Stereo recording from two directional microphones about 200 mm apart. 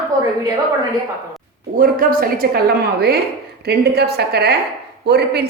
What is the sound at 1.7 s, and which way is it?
A woman's voice, 45° right (ahead or behind).